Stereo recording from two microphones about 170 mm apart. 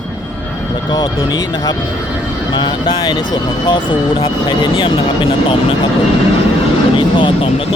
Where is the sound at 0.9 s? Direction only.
25° left (ahead or behind).